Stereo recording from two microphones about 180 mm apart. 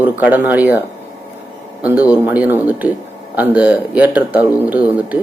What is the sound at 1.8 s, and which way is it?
Speech, 10° right (ahead or behind).